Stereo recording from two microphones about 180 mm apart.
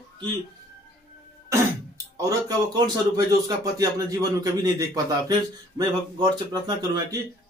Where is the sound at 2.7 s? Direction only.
20° right (ahead or behind).